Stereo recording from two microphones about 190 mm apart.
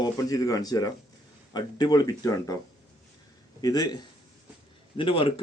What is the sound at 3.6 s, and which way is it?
Speech, 20° left (ahead or behind).